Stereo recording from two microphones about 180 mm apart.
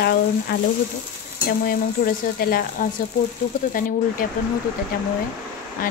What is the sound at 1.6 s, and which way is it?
Speech, 55° left (ahead or behind).